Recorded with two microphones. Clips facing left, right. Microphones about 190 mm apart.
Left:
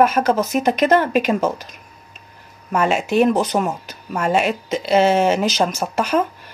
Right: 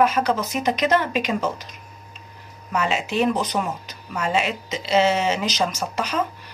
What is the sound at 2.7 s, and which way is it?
Speech, 50° left (ahead or behind).